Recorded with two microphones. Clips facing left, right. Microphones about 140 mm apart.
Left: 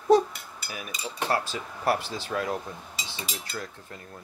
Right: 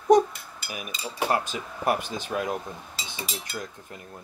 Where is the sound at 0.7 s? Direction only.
15° right (ahead or behind).